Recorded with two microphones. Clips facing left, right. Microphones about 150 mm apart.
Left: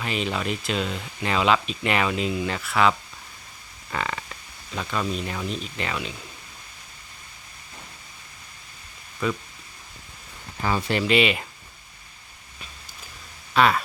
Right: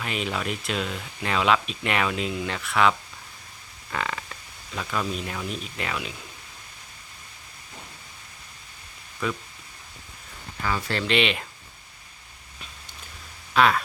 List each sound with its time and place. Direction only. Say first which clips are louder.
0.0 s speech: left 2 dB; centre (ahead or behind)
3.9 s speech: left 1 dB; centre (ahead or behind)
9.2 s speech: left 3 dB; centre (ahead or behind)
10.6 s speech: left 3 dB; 25° left (ahead or behind)
11.0 s speech: left 2 dB; 5° left (ahead or behind)
13.5 s speech: left 1 dB; centre (ahead or behind)